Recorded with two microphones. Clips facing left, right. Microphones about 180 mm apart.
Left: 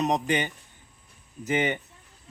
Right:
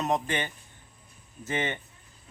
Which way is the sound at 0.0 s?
15° left (ahead or behind).